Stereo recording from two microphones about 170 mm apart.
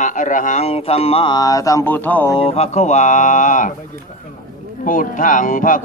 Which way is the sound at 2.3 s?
35° left (ahead or behind).